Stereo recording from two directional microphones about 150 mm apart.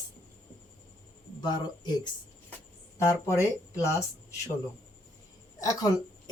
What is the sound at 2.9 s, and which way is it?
A woman's voice, 20° left (ahead or behind).